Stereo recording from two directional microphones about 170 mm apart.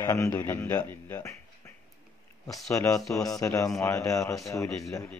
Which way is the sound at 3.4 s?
20° left (ahead or behind).